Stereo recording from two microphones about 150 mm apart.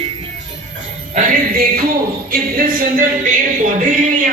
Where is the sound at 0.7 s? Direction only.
65° right (ahead or behind); by 1.9 s 85° right.